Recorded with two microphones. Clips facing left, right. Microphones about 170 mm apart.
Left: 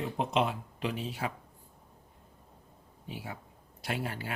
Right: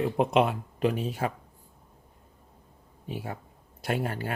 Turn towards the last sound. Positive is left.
turn(degrees=-50)  # may be behind; listen again after turning